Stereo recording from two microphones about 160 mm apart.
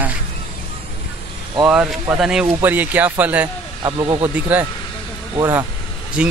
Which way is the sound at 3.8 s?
30° right (ahead or behind).